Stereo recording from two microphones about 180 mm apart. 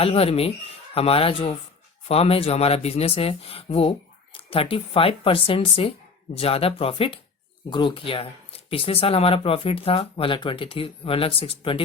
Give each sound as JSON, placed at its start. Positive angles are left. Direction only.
{"t": 0.0, "sound": "speech", "side_deg": 35}